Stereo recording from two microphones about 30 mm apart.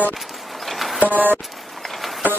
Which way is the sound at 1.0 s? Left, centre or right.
Right.